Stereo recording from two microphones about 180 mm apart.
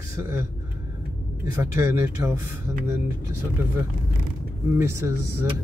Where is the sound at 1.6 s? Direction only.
15° right (ahead or behind).